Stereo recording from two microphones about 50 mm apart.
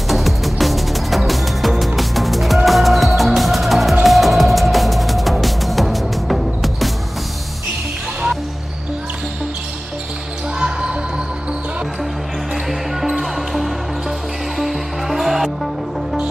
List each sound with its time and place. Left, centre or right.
0.1 s music: centre
10.6 s basketball bounce: centre
12.6 s music: centre